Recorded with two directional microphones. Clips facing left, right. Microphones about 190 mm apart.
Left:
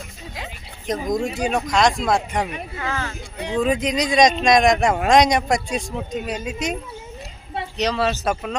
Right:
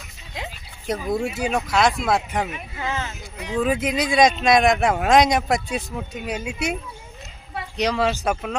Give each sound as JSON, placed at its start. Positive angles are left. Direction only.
{"t": 1.1, "sound": "speech", "side_deg": -5}
{"t": 2.8, "sound": "speech", "side_deg": -20}
{"t": 3.3, "sound": "speech", "side_deg": 30}
{"t": 3.6, "sound": "speech", "side_deg": -5}
{"t": 7.8, "sound": "speech", "side_deg": -10}